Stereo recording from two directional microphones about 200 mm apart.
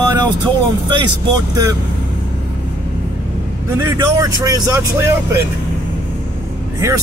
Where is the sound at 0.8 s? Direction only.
20° right (ahead or behind).